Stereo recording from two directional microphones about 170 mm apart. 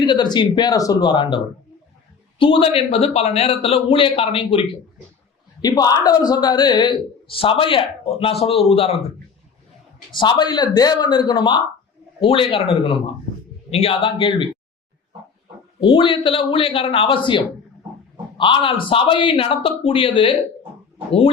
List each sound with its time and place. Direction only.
0.0 s speech: 25° left (ahead or behind)
2.4 s a man's voice: 30° left (ahead or behind)
5.6 s a man's voice: 20° left (ahead or behind); by 9.0 s 35° left (ahead or behind)
10.2 s a man's voice: 25° left (ahead or behind)
15.8 s a man's voice: 30° left (ahead or behind)